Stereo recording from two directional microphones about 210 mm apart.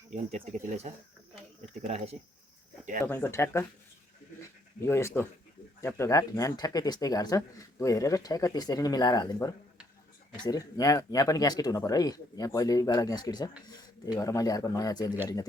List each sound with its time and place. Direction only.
0.1 s speech: 35° right (ahead or behind)
3.0 s speech: 10° left (ahead or behind)
4.8 s speech: 10° left (ahead or behind)